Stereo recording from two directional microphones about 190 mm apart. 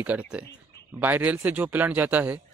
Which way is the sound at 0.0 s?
5° right (ahead or behind).